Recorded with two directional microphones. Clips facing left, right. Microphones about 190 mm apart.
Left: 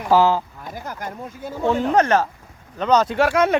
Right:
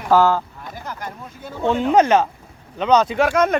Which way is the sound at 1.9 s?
15° right (ahead or behind).